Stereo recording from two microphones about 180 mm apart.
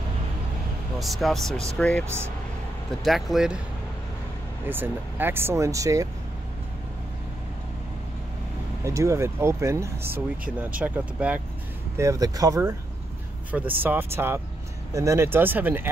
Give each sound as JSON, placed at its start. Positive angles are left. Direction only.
{"t": 0.9, "sound": "speech", "side_deg": 0}
{"t": 2.0, "sound": "speech", "side_deg": -15}
{"t": 3.0, "sound": "speech", "side_deg": 0}
{"t": 4.6, "sound": "speech", "side_deg": -10}
{"t": 8.8, "sound": "speech", "side_deg": -15}
{"t": 12.0, "sound": "speech", "side_deg": -20}